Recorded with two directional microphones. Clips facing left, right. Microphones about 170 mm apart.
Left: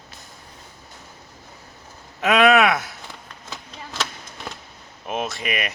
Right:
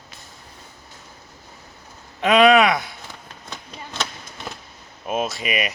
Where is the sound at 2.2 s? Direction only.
Centre (ahead or behind).